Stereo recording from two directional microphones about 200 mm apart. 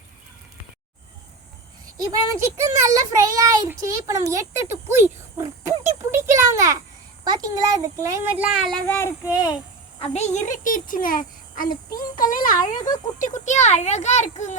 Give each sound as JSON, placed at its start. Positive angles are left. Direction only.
{"t": 2.6, "sound": "a child's voice", "side_deg": -15}
{"t": 8.9, "sound": "speech", "side_deg": 10}
{"t": 10.0, "sound": "a child's voice", "side_deg": 35}
{"t": 12.5, "sound": "speech", "side_deg": 20}
{"t": 13.1, "sound": "speech", "side_deg": 35}